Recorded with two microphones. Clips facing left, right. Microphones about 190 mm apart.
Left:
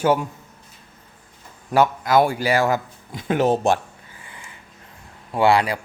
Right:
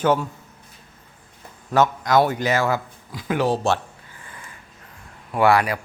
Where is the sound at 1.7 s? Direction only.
10° left (ahead or behind).